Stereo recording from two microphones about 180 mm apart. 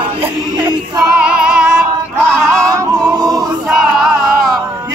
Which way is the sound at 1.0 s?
5° right (ahead or behind).